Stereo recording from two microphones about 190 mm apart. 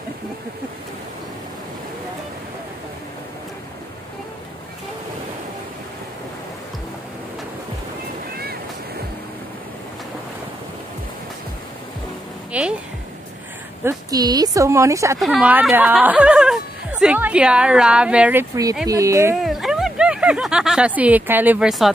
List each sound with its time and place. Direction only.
12.5 s speech: 5° right (ahead or behind)
13.8 s speech: 20° right (ahead or behind)
15.1 s speech: centre (ahead or behind)
19.4 s snicker: centre (ahead or behind)